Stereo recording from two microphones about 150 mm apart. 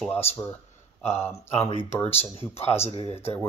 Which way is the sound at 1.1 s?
15° left (ahead or behind).